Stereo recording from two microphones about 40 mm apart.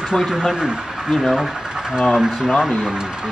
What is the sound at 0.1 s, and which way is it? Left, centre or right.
Speech, centre.